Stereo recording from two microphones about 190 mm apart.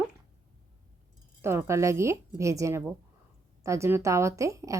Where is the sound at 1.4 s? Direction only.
15° right (ahead or behind).